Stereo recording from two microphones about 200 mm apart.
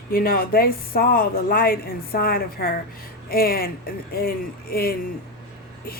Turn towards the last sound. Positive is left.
turn(degrees=50)  # may be behind; listen again after turning